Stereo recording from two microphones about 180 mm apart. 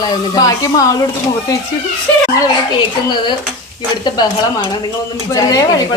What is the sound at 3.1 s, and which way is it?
Speech, 25° left (ahead or behind).